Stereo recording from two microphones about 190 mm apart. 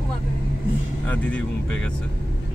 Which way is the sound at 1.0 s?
10° left (ahead or behind).